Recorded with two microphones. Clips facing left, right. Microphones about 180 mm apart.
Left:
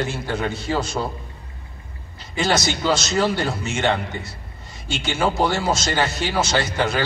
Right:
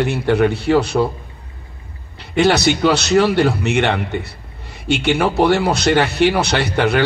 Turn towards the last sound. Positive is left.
turn(degrees=-65)  # may be behind; listen again after turning